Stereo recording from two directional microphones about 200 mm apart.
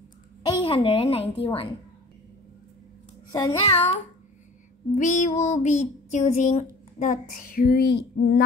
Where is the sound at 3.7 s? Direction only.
30° left (ahead or behind).